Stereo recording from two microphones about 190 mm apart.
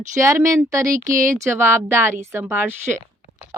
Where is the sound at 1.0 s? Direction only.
45° right (ahead or behind).